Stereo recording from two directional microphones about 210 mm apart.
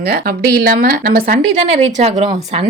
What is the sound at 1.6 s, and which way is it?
Speech, 30° right (ahead or behind).